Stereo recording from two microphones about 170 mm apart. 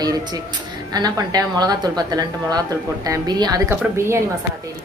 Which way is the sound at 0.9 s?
20° right (ahead or behind).